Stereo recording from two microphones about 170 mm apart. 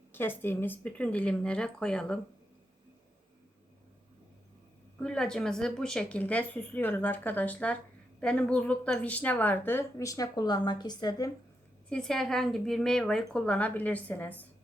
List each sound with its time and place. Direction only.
0.1 s a woman's voice: 10° left (ahead or behind)
4.9 s a woman's voice: 5° left (ahead or behind); by 11.3 s 25° left (ahead or behind)
11.9 s a woman's voice: 5° left (ahead or behind)